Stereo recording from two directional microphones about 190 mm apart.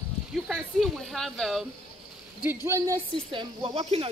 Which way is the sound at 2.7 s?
15° right (ahead or behind).